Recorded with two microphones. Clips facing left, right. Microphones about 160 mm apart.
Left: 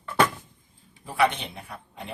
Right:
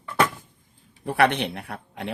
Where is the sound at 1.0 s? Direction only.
70° right (ahead or behind).